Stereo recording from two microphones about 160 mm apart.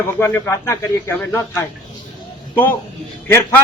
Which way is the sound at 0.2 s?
15° left (ahead or behind).